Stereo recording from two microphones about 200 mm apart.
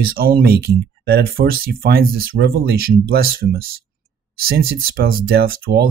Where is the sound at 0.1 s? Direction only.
50° right (ahead or behind).